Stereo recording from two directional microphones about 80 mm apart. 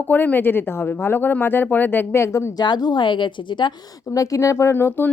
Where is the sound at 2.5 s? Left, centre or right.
Left.